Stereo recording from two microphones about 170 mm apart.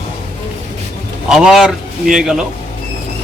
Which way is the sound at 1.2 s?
Centre (ahead or behind).